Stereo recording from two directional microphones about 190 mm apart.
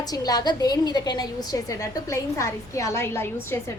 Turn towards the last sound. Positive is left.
turn(degrees=15)  # may be behind; listen again after turning